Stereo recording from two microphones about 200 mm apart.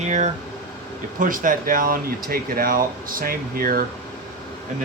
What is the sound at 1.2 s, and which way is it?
Speech, 40° right (ahead or behind).